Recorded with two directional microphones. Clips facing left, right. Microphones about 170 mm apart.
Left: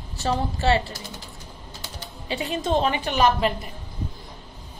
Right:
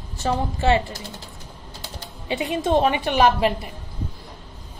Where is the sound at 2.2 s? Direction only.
20° right (ahead or behind).